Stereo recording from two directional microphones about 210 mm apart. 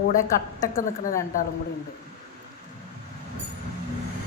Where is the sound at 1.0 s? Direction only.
40° left (ahead or behind).